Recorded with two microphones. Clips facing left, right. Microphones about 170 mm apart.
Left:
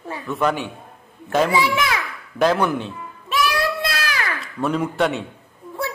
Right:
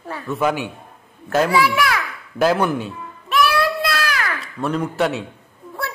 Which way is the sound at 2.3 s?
5° right (ahead or behind).